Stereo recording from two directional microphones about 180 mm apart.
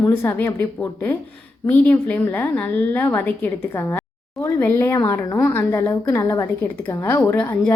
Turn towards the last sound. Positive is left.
turn(degrees=10)  # may be behind; listen again after turning